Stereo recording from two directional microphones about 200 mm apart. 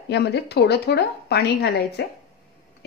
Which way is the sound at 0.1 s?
55° left (ahead or behind).